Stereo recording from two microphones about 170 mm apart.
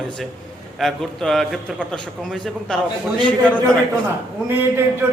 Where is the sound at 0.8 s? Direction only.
Centre (ahead or behind).